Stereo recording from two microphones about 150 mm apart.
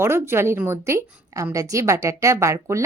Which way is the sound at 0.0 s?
15° right (ahead or behind).